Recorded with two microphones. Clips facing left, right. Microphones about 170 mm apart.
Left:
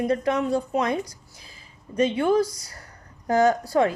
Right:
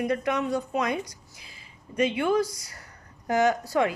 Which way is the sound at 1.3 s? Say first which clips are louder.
Left 1 dB; 35° left (ahead or behind).